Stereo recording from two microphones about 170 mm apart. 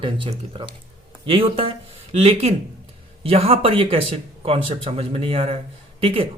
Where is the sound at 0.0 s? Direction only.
30° right (ahead or behind).